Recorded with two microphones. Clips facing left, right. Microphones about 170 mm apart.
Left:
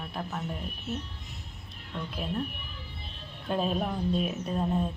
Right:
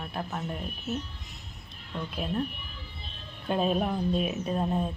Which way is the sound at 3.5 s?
5° right (ahead or behind).